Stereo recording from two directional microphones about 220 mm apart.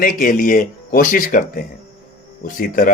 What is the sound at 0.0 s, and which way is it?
Speech, 40° left (ahead or behind).